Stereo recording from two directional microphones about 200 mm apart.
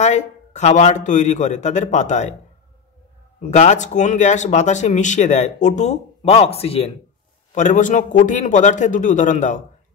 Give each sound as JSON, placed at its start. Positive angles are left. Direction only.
{"t": 0.0, "sound": "speech", "side_deg": 35}
{"t": 3.3, "sound": "speech", "side_deg": 35}